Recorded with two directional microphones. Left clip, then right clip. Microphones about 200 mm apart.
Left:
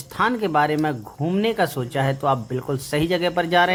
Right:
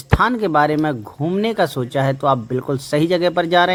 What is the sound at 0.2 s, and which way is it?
Speech, 25° right (ahead or behind).